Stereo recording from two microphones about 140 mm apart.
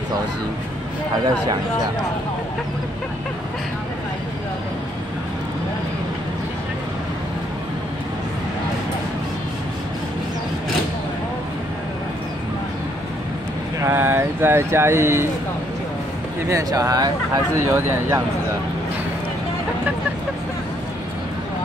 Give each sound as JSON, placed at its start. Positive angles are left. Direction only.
{"t": 1.2, "sound": "speech", "side_deg": -30}
{"t": 13.8, "sound": "speech", "side_deg": -15}
{"t": 16.4, "sound": "speech", "side_deg": -25}